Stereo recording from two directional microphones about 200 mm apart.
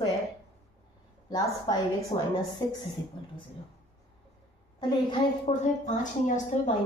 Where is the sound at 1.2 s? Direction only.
20° left (ahead or behind).